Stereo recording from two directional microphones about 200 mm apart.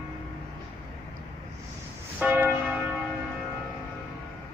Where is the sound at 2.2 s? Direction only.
5° right (ahead or behind).